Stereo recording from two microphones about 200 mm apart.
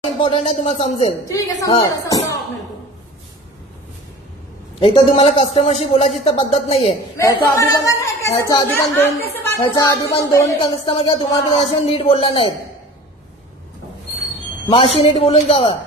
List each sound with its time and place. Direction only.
0.2 s a man's voice: 30° left (ahead or behind)
1.6 s a woman's voice: 20° left (ahead or behind)
4.7 s a man's voice: 25° left (ahead or behind)
7.2 s a woman's voice: 15° left (ahead or behind)
10.6 s speech: 25° left (ahead or behind)
14.7 s speech: 30° left (ahead or behind)